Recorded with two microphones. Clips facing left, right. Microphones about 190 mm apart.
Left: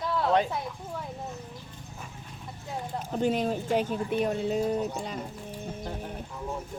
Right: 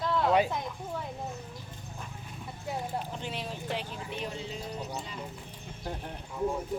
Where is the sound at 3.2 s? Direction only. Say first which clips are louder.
Left 11 dB; 45° left (ahead or behind).